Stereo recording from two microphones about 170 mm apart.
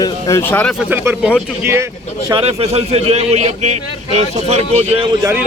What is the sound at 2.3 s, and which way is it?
A man's voice, 35° right (ahead or behind).